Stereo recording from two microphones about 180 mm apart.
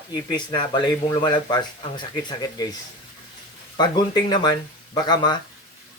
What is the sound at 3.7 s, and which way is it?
Speech, 25° left (ahead or behind).